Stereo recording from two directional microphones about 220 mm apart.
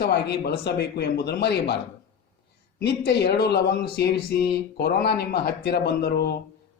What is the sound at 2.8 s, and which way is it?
Speech, 50° left (ahead or behind).